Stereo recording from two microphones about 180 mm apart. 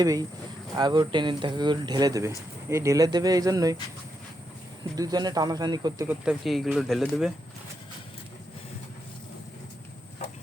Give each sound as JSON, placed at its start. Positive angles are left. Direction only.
{"t": 0.0, "sound": "speech", "side_deg": -20}
{"t": 4.8, "sound": "speech", "side_deg": -20}
{"t": 6.1, "sound": "speech", "side_deg": 0}